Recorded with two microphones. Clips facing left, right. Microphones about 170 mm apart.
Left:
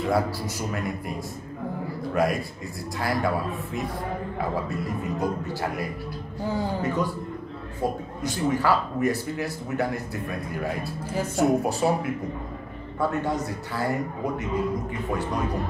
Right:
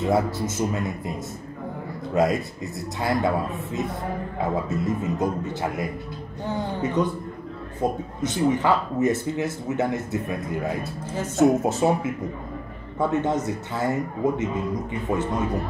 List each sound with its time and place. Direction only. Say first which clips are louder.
0.0 s a man's voice: right 2 dB; 20° right (ahead or behind)
2.1 s a man's voice: right 3 dB; 20° right (ahead or behind)
4.4 s a man's voice: right 4 dB; 20° right (ahead or behind)